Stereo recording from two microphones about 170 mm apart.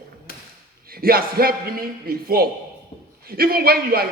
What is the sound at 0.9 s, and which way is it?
A man's voice, 60° right (ahead or behind).